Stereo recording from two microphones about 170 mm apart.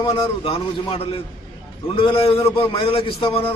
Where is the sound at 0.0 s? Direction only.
30° left (ahead or behind).